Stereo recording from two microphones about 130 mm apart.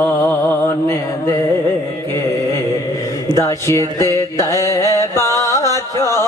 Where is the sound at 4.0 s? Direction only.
25° left (ahead or behind).